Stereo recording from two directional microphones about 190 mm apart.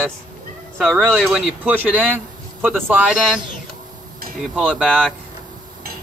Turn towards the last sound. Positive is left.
turn(degrees=5)  # may be behind; listen again after turning